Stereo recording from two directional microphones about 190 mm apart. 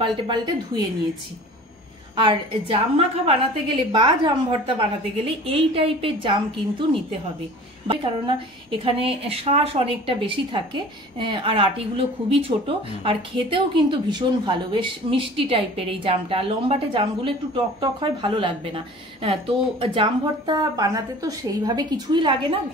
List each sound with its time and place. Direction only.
0.0 s a woman's voice: 25° right (ahead or behind)
2.1 s a woman's voice: 25° right (ahead or behind)